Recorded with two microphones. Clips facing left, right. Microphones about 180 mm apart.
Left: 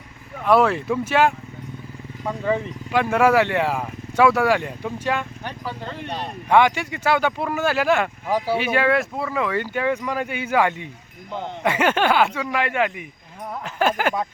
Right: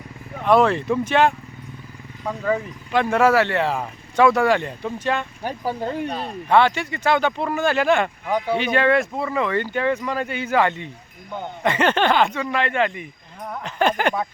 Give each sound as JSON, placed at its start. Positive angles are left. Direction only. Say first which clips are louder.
{"t": 0.4, "sound": "speech", "louder": "right 1 dB", "side_deg": 5}
{"t": 5.4, "sound": "speech", "louder": "right 6 dB", "side_deg": -40}
{"t": 6.5, "sound": "speech", "louder": "even", "side_deg": 15}